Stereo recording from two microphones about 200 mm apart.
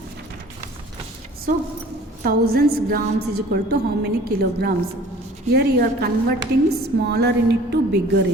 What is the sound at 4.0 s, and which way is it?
A woman's voice, 55° right (ahead or behind).